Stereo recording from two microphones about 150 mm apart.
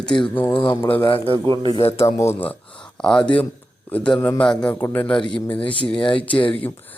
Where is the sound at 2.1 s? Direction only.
15° left (ahead or behind).